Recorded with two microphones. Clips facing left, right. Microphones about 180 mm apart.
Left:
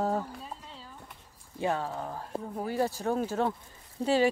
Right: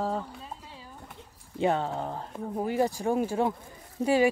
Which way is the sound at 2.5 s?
15° right (ahead or behind).